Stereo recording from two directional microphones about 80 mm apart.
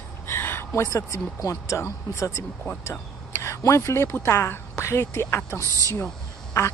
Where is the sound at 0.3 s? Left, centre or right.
Left.